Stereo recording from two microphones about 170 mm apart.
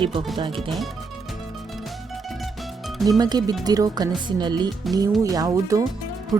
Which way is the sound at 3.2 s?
25° right (ahead or behind).